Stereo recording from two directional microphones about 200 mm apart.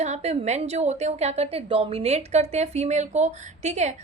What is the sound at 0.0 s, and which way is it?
A woman's voice, 35° right (ahead or behind).